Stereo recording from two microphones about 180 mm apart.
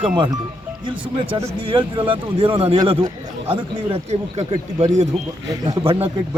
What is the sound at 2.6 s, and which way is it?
A man's voice, 30° right (ahead or behind).